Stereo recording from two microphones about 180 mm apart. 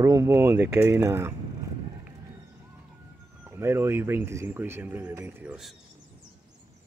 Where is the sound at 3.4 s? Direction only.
15° right (ahead or behind).